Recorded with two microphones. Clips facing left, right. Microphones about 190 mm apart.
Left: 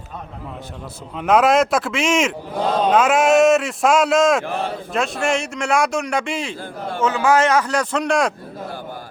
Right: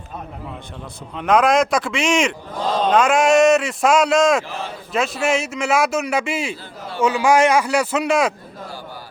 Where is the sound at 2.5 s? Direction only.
60° left (ahead or behind).